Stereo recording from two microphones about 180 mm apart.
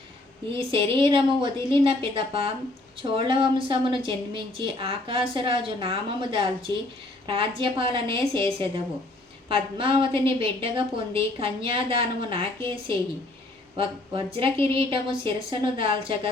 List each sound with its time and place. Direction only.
0.5 s a woman's voice: 30° right (ahead or behind)
14.3 s a woman's voice: 30° right (ahead or behind)